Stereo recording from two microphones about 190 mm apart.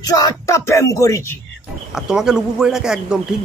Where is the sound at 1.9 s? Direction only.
5° right (ahead or behind).